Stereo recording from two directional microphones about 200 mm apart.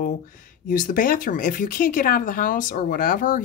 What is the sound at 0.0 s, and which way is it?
Speech, 40° left (ahead or behind).